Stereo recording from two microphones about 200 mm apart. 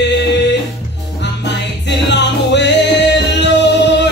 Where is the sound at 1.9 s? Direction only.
60° left (ahead or behind).